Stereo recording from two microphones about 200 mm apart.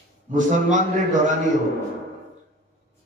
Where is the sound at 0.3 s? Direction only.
40° right (ahead or behind).